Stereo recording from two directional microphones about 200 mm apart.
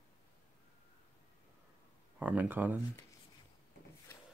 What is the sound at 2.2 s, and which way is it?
Speech, 5° right (ahead or behind).